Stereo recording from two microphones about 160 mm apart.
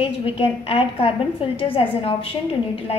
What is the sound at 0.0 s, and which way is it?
A woman's voice, 35° left (ahead or behind).